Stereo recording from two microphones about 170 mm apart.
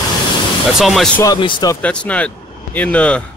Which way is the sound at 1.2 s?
30° left (ahead or behind).